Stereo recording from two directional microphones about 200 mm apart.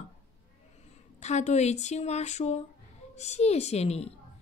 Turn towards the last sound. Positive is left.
turn(degrees=30)  # may be behind; listen again after turning